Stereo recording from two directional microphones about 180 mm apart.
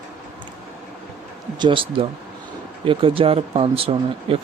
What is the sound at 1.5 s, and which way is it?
Speech, 25° right (ahead or behind).